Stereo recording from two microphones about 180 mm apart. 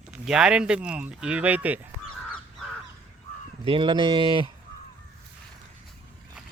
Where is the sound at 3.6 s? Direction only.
30° right (ahead or behind).